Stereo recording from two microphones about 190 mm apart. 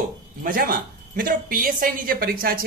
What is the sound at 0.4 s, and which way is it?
Speech, 45° right (ahead or behind).